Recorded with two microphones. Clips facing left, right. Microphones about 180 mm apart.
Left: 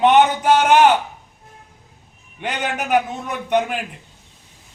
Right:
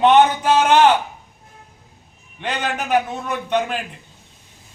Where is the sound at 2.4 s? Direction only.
15° left (ahead or behind).